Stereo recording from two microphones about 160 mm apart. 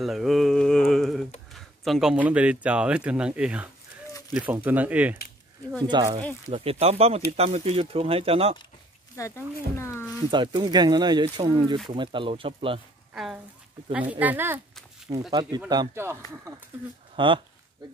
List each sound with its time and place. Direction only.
0.0 s mantra: centre (ahead or behind)
1.5 s speech: centre (ahead or behind)
5.9 s speech: 25° right (ahead or behind)
9.2 s speech: 20° left (ahead or behind)
9.8 s a sound: 15° left (ahead or behind)
10.3 s speech: 30° right (ahead or behind)
13.1 s speech: 5° right (ahead or behind)
15.1 s speech: 40° right (ahead or behind)
15.7 s speech: 25° right (ahead or behind)
17.1 s speech: 30° right (ahead or behind)